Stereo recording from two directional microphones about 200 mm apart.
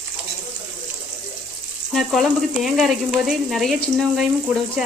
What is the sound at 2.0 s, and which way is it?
Frying, centre (ahead or behind).